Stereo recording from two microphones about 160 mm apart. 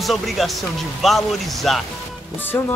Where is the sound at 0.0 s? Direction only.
Centre (ahead or behind).